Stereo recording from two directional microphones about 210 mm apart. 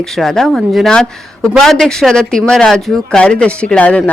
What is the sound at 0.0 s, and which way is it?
A woman's voice, centre (ahead or behind).